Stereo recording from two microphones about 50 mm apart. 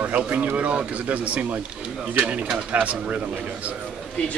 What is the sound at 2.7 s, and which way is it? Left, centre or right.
Speech, right.